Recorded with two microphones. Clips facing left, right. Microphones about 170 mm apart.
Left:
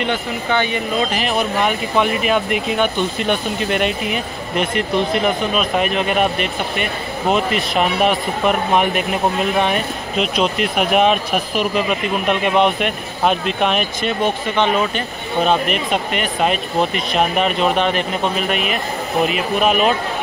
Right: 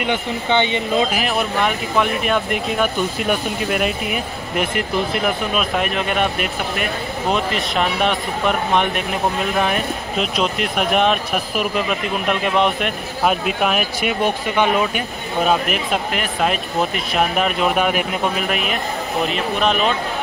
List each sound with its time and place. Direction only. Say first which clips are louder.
0.0 s speech: even; 20° right (ahead or behind)
1.1 s speech: left 1 dB; centre (ahead or behind)